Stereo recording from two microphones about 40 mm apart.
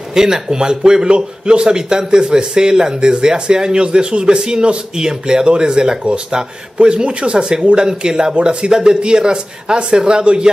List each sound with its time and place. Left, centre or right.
0.1 s a man's voice: centre